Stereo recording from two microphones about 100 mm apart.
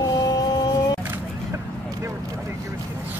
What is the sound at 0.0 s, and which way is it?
Vehicle, 40° left (ahead or behind).